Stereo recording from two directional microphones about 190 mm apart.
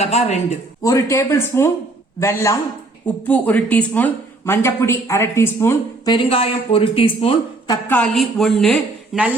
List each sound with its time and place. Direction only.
0.0 s speech: 35° left (ahead or behind)
0.8 s speech: 15° left (ahead or behind)
6.1 s speech: 30° left (ahead or behind)
7.9 s a woman's voice: 5° left (ahead or behind)